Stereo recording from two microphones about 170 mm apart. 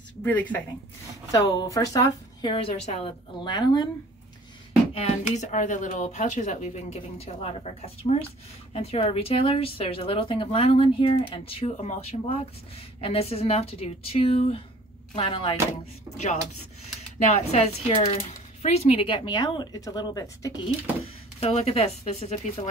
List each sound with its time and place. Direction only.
0.2 s speech: 10° left (ahead or behind)
1.3 s a woman's voice: 20° left (ahead or behind)
2.5 s a woman's voice: 35° left (ahead or behind)
4.9 s a woman's voice: 40° left (ahead or behind)
17.2 s a woman's voice: 40° left (ahead or behind); by 20.5 s 20° left (ahead or behind)
21.4 s a woman's voice: 35° left (ahead or behind)